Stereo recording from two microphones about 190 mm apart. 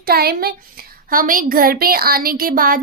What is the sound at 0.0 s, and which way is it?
A child's voice, 55° right (ahead or behind).